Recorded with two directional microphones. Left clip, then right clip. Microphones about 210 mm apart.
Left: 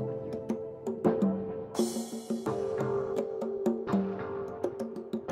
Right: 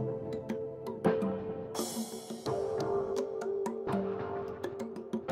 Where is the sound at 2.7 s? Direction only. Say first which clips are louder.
Left 1 dB; 25° left (ahead or behind).